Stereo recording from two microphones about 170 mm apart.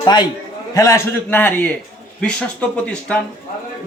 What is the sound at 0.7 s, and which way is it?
A man's voice, 15° left (ahead or behind).